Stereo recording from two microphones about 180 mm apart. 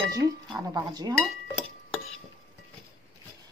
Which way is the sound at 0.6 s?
20° right (ahead or behind).